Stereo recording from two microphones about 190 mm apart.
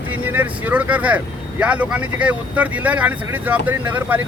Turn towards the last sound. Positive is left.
turn(degrees=-10)  # may be behind; listen again after turning